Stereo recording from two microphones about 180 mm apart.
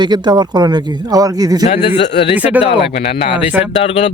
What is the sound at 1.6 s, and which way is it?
Speech, 35° left (ahead or behind).